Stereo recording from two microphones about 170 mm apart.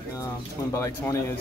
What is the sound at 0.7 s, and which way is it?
Speech, 15° left (ahead or behind).